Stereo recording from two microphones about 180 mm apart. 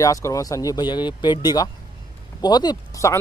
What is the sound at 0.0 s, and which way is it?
Speech, 20° left (ahead or behind).